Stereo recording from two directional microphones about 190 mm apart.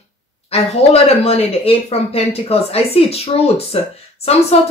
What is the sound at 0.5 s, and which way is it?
A woman's voice, 30° left (ahead or behind).